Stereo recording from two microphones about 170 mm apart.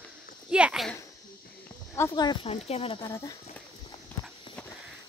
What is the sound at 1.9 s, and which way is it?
Speech, 25° left (ahead or behind).